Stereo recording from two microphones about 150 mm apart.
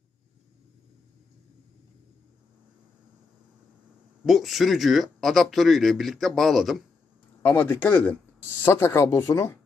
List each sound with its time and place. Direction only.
4.2 s speech: centre (ahead or behind)
7.4 s speech: 10° left (ahead or behind)